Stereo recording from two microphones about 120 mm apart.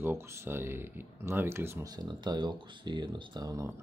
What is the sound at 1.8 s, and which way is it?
Speech, 35° right (ahead or behind).